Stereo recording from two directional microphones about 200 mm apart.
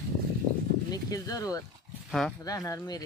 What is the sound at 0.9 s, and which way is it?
Speech, 20° left (ahead or behind).